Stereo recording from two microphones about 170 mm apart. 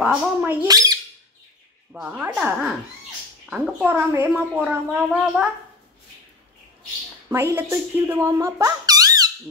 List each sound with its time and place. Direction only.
0.0 s speech: 5° right (ahead or behind)
0.7 s speech: 20° right (ahead or behind)
1.9 s a woman's voice: 10° right (ahead or behind)
7.2 s speech: 15° right (ahead or behind)